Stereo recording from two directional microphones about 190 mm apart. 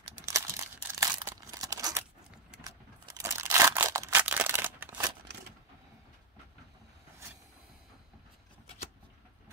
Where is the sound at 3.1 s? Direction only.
15° right (ahead or behind).